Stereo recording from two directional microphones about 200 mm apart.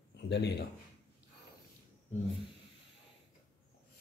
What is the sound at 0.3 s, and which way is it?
Speech, 55° left (ahead or behind).